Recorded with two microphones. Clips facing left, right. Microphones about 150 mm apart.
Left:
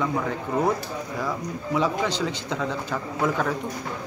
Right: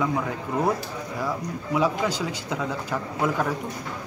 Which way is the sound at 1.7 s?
5° right (ahead or behind).